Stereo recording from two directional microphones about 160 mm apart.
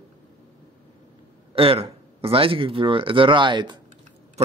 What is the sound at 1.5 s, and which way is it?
Speech, 35° right (ahead or behind).